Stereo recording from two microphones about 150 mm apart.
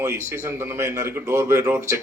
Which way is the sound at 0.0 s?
20° right (ahead or behind).